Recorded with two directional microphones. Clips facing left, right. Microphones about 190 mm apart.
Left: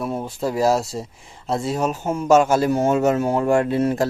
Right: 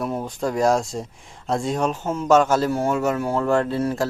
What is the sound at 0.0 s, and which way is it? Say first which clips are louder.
A man's voice: left 1 dB; 5° left (ahead or behind).